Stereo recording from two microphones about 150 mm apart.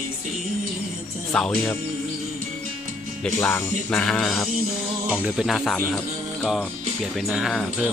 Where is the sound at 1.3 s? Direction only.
5° left (ahead or behind).